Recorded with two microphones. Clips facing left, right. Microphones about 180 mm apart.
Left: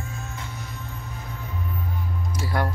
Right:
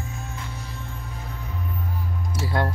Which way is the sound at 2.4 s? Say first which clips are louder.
Right 1 dB; 25° right (ahead or behind).